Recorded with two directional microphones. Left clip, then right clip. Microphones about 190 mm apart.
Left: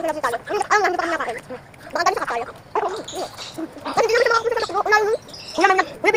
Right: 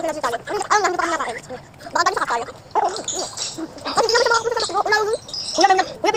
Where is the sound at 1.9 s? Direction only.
10° right (ahead or behind).